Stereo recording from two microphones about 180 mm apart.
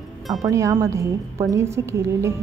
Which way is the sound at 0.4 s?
15° right (ahead or behind).